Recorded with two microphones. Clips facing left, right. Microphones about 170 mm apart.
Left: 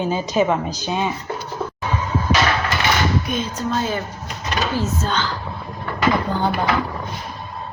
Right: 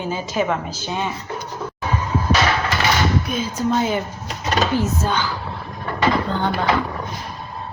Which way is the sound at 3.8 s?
15° right (ahead or behind).